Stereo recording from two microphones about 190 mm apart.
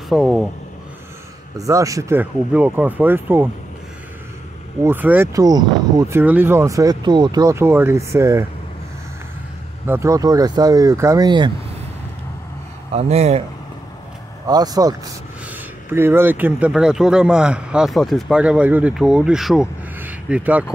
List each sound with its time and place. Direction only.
0.1 s speech: centre (ahead or behind)
1.6 s speech: 15° right (ahead or behind)
4.8 s speech: 10° right (ahead or behind)
9.8 s speech: 15° right (ahead or behind)
12.9 s speech: 35° right (ahead or behind)
14.5 s speech: 20° right (ahead or behind)